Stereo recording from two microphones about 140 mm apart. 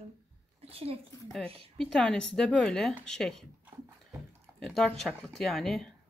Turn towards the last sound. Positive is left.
turn(degrees=5)  # may be behind; listen again after turning